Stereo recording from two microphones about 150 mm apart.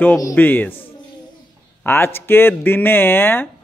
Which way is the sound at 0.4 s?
10° left (ahead or behind).